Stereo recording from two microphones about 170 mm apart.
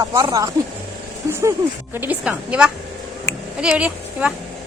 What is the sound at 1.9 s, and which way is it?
Speech, 10° right (ahead or behind).